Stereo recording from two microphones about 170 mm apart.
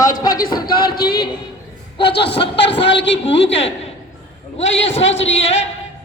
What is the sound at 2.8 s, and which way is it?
Speech, 90° left.